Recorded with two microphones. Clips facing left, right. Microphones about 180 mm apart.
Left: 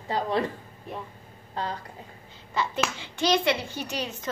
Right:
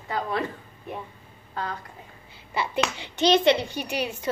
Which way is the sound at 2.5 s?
10° right (ahead or behind).